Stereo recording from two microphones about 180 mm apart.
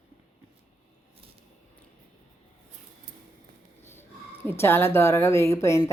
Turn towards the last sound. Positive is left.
turn(degrees=15)  # may be behind; listen again after turning